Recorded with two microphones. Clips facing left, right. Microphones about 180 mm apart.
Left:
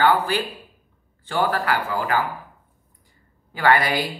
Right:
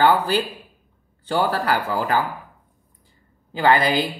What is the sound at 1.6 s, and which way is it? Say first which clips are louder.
Speech: right 2 dB; 35° right (ahead or behind).